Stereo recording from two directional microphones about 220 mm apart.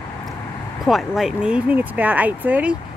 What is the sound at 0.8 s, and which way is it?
Speech, centre (ahead or behind).